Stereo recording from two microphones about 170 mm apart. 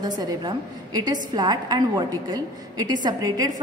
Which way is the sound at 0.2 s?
25° right (ahead or behind).